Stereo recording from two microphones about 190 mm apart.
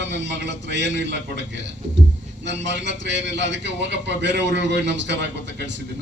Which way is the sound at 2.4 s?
65° right (ahead or behind).